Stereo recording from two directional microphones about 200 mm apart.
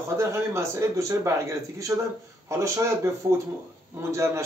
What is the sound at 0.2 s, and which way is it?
Speech, 15° right (ahead or behind).